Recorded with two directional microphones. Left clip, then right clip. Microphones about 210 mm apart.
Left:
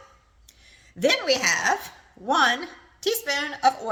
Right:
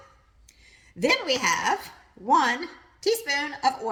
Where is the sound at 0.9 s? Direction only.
10° left (ahead or behind).